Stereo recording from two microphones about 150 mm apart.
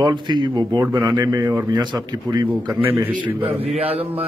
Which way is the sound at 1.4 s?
15° right (ahead or behind).